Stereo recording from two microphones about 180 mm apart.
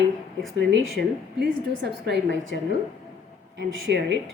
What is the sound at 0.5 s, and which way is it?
A woman's voice, 85° right.